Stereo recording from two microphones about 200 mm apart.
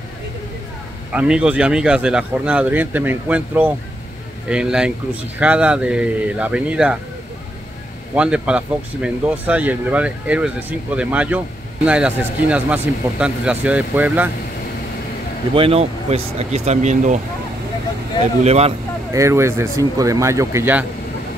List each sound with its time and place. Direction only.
1.1 s speech: 5° right (ahead or behind)
8.1 s speech: 5° right (ahead or behind)
15.5 s speech: 30° right (ahead or behind)
18.4 s speech: 30° right (ahead or behind)
19.1 s speech: 15° right (ahead or behind)